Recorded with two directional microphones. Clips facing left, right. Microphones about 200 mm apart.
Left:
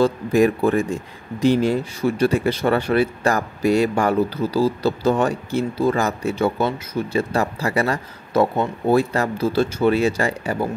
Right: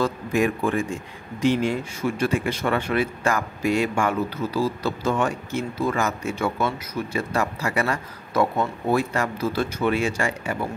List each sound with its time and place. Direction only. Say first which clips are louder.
0.0 s speech: left 6 dB; 35° left (ahead or behind)